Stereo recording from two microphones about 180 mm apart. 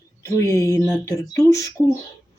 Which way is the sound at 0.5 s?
20° left (ahead or behind).